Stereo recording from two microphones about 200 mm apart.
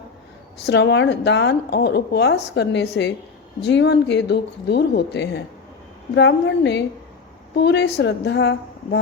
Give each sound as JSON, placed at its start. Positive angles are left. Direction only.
{"t": 0.6, "sound": "a woman's voice", "side_deg": 55}